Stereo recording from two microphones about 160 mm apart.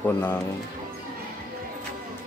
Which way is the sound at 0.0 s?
15° left (ahead or behind).